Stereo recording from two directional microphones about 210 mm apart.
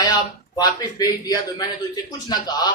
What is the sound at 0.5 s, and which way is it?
Speech, 20° left (ahead or behind).